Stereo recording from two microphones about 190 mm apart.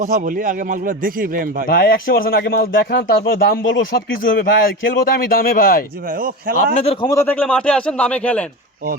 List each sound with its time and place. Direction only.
0.0 s a man's voice: 40° right (ahead or behind)
1.6 s speech: 50° left (ahead or behind)
4.2 s speech: 50° left (ahead or behind)
6.1 s a man's voice: 50° right (ahead or behind)
6.7 s a man's voice: 30° left (ahead or behind)
7.1 s a man's voice: 10° left (ahead or behind)